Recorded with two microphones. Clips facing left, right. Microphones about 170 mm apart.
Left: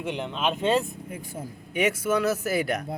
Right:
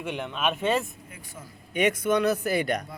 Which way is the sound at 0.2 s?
30° left (ahead or behind).